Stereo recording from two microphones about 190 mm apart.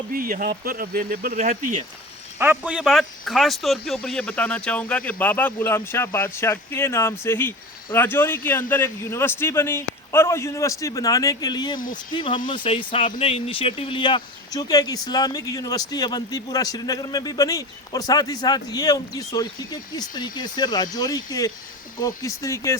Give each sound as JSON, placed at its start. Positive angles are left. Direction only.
{"t": 0.1, "sound": "speech", "side_deg": -50}
{"t": 2.4, "sound": "speech", "side_deg": -10}